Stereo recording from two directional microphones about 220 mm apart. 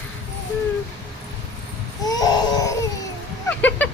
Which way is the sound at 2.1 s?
15° left (ahead or behind).